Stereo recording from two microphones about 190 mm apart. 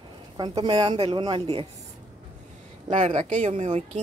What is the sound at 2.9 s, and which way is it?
Speech, 35° right (ahead or behind).